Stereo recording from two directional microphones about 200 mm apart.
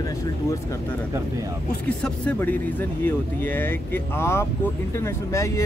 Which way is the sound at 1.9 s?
5° left (ahead or behind).